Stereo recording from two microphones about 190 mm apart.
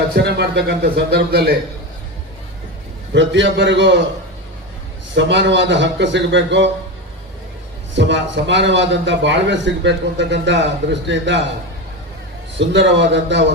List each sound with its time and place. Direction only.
0.2 s a man's voice: 60° right (ahead or behind)
3.2 s a man's voice: 70° right (ahead or behind)
5.1 s a man's voice: 70° right (ahead or behind)
7.9 s a man's voice: 70° right (ahead or behind)
12.5 s a man's voice: 70° right (ahead or behind)